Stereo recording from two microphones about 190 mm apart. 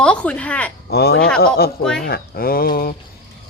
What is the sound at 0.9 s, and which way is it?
Speech, 60° left (ahead or behind).